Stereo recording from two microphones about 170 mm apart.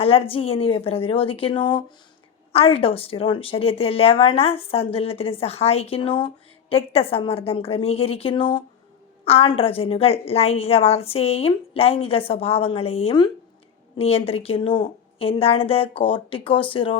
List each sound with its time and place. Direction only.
0.0 s a woman's voice: 35° left (ahead or behind)